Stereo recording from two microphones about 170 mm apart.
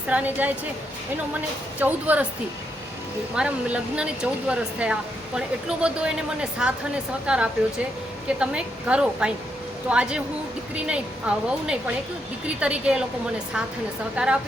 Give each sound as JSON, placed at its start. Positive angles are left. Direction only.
{"t": 0.1, "sound": "a woman's voice", "side_deg": -10}
{"t": 1.8, "sound": "a woman's voice", "side_deg": -10}
{"t": 3.3, "sound": "a woman's voice", "side_deg": -5}
{"t": 14.2, "sound": "a woman's voice", "side_deg": -5}